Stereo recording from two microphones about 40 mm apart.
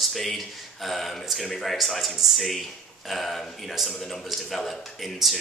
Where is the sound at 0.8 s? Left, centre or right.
Centre.